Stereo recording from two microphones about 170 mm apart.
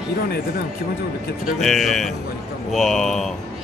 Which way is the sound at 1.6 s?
Centre (ahead or behind).